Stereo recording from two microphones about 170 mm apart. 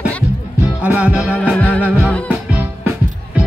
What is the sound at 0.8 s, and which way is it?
Music, 5° right (ahead or behind).